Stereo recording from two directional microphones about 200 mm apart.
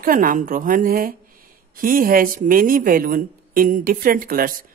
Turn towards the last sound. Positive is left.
turn(degrees=-45)  # may be behind; listen again after turning